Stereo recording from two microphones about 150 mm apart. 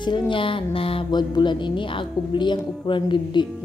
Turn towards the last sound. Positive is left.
turn(degrees=30)  # may be behind; listen again after turning